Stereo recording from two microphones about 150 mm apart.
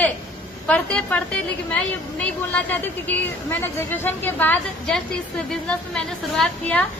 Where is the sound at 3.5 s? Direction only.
15° left (ahead or behind).